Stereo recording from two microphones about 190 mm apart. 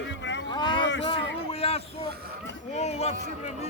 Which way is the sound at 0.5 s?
25° left (ahead or behind).